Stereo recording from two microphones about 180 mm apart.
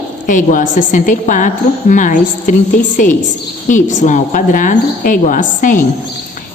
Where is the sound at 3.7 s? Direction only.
45° left (ahead or behind).